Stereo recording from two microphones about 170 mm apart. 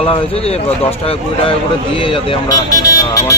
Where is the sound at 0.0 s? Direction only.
35° left (ahead or behind).